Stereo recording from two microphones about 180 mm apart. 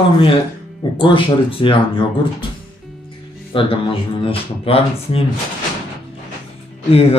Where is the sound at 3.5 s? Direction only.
30° left (ahead or behind).